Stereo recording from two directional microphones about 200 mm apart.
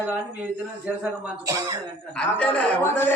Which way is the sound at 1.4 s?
15° right (ahead or behind).